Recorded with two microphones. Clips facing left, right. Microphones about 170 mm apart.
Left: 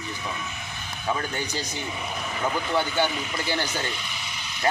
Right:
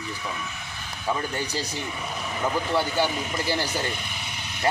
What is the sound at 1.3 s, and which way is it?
Speech, 35° right (ahead or behind).